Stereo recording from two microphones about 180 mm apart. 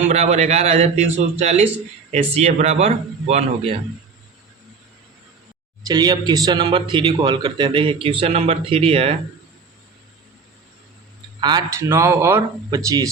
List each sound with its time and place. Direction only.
0.1 s a man's voice: 35° right (ahead or behind)
5.9 s a man's voice: 20° right (ahead or behind)
11.3 s speech: 25° right (ahead or behind)